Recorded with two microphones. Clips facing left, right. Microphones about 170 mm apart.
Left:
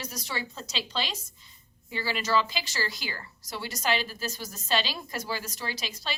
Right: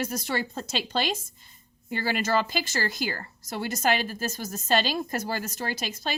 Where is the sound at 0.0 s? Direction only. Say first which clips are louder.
Right 7 dB; 50° right (ahead or behind).